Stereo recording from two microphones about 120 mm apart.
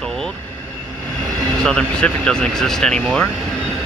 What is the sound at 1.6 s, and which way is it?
Speech, 5° left (ahead or behind).